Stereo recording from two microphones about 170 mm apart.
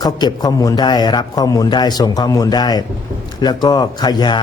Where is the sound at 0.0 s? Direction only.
25° left (ahead or behind).